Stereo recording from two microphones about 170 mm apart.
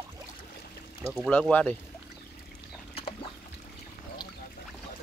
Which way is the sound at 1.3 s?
10° left (ahead or behind).